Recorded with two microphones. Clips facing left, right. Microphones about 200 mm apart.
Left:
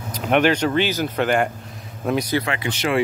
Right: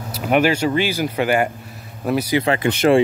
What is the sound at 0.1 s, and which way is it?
Speech, 5° right (ahead or behind).